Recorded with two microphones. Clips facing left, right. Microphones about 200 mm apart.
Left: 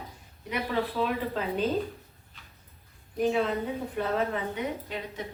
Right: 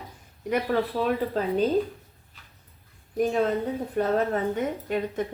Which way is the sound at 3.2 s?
45° right (ahead or behind).